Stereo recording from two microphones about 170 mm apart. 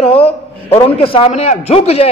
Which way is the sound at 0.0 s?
35° left (ahead or behind).